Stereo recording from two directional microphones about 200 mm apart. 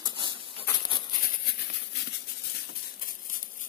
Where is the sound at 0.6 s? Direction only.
20° left (ahead or behind).